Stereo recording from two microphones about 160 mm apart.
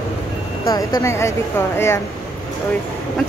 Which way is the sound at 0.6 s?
20° left (ahead or behind).